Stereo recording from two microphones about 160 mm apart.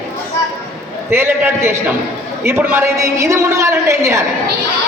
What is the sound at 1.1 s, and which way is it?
A man's voice, 15° right (ahead or behind).